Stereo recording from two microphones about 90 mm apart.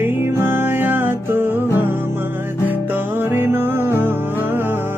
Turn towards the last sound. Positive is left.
turn(degrees=-25)  # may be behind; listen again after turning